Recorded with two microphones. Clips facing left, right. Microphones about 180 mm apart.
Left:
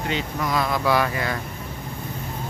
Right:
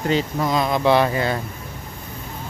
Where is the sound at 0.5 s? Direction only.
20° right (ahead or behind).